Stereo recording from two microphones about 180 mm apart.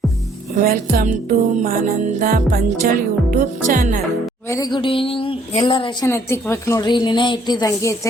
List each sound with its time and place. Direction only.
0.5 s music: 50° right (ahead or behind)
4.4 s a woman's voice: 20° left (ahead or behind)
6.1 s a woman's voice: 15° left (ahead or behind)